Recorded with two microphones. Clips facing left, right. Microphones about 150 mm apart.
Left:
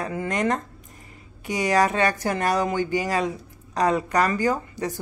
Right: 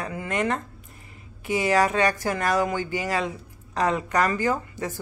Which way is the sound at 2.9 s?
40° left (ahead or behind).